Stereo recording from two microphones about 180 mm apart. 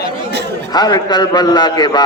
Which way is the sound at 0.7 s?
25° left (ahead or behind).